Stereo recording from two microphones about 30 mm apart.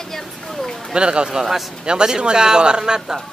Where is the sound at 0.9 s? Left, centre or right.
Right.